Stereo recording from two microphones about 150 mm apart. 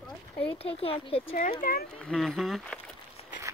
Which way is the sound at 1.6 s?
60° left (ahead or behind).